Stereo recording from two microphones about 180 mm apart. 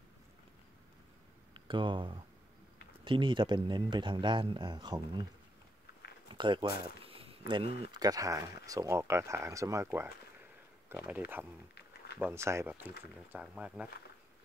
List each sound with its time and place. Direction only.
1.5 s speech: 25° right (ahead or behind)
6.3 s speech: 25° right (ahead or behind); by 13.8 s 5° right (ahead or behind)